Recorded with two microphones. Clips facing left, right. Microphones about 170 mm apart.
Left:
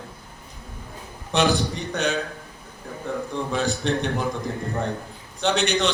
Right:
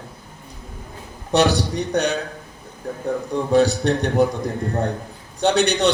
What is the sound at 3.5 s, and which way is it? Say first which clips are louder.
Speech: right 9 dB; 35° right (ahead or behind).